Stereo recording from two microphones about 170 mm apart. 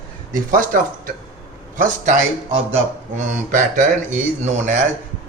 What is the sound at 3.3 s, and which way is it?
A man's voice, 50° right (ahead or behind).